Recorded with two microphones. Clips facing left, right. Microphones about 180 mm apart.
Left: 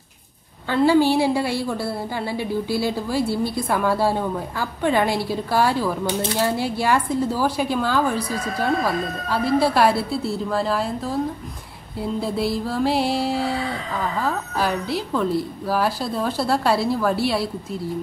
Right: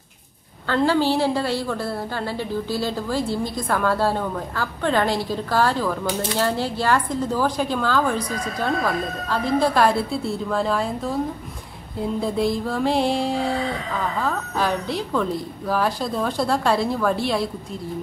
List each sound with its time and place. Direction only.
0.7 s a woman's voice: 10° left (ahead or behind)
12.2 s a woman's voice: 5° left (ahead or behind)